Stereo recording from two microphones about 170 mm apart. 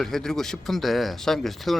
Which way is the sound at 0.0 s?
5° left (ahead or behind).